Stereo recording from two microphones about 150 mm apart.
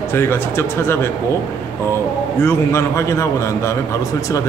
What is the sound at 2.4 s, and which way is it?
A woman's voice, 20° left (ahead or behind).